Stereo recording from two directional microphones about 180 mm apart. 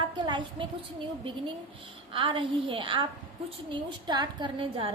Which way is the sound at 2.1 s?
30° right (ahead or behind).